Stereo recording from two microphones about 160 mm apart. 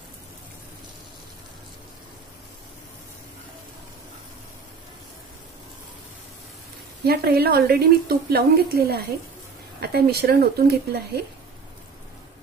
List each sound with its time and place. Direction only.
7.1 s a woman's voice: 75° right (ahead or behind)
9.8 s speech: 85° right